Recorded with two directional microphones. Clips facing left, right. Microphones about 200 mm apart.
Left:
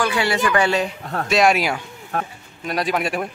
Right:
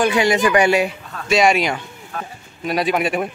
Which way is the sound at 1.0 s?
65° left (ahead or behind).